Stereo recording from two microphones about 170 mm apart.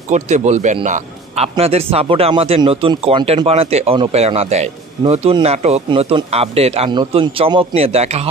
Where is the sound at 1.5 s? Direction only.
35° right (ahead or behind).